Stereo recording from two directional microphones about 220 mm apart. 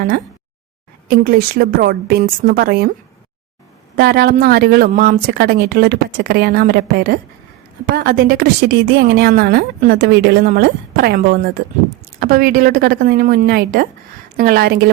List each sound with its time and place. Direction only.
1.0 s a woman's voice: 40° right (ahead or behind)
3.9 s a woman's voice: 45° right (ahead or behind)